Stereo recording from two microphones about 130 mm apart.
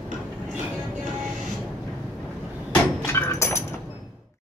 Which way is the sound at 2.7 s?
15° left (ahead or behind).